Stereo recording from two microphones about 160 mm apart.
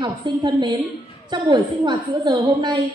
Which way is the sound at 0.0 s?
30° right (ahead or behind).